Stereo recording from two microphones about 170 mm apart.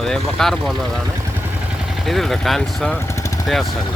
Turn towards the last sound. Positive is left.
turn(degrees=0)  # may be behind; listen again after turning